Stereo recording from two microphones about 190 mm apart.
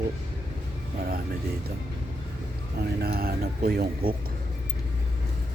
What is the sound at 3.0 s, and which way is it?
Speech, 55° right (ahead or behind).